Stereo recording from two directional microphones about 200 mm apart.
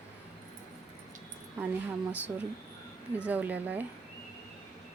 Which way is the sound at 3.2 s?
10° right (ahead or behind).